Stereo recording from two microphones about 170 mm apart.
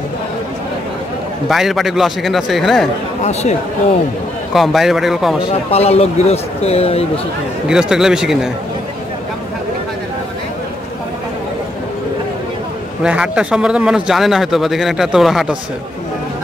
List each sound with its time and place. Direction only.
1.5 s a man's voice: centre (ahead or behind)
4.6 s a man's voice: centre (ahead or behind)
5.5 s speech: 35° left (ahead or behind)
7.6 s a man's voice: 5° right (ahead or behind)
13.0 s a man's voice: 5° right (ahead or behind)